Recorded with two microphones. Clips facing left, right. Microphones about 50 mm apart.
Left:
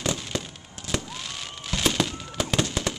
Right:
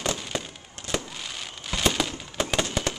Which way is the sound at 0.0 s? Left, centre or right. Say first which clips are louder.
Even; centre.